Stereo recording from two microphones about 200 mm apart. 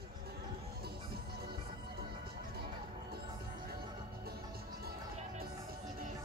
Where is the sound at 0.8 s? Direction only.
50° right (ahead or behind).